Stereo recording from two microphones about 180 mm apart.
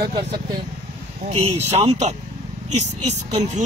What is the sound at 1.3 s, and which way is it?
Speech, 35° right (ahead or behind).